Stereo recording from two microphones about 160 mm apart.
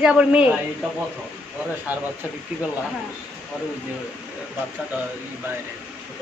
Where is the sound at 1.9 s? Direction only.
10° right (ahead or behind).